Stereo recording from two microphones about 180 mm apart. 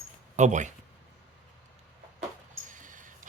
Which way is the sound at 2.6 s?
45° right (ahead or behind).